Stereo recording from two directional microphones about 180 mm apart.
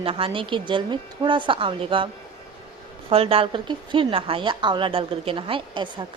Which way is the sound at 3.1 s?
30° right (ahead or behind).